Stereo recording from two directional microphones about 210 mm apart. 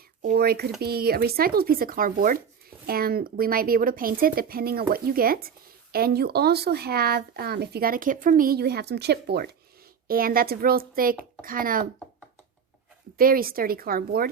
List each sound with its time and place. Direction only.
0.2 s speech: 45° right (ahead or behind)
13.1 s speech: 45° right (ahead or behind)